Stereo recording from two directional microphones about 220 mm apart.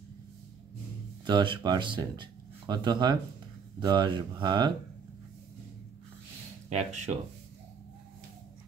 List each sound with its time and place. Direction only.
1.2 s speech: 20° right (ahead or behind)
6.7 s speech: 30° right (ahead or behind)